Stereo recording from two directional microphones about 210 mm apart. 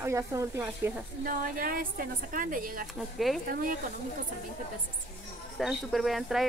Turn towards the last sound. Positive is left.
turn(degrees=0)  # may be behind; listen again after turning